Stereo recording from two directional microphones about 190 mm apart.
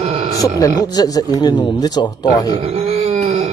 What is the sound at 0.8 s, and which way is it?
Speech, 20° left (ahead or behind).